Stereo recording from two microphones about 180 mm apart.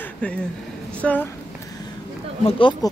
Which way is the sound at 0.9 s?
10° left (ahead or behind).